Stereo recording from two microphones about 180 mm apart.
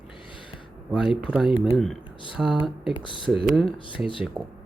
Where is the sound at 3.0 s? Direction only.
25° left (ahead or behind).